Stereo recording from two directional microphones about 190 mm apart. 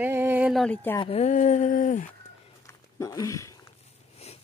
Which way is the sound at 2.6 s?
15° left (ahead or behind).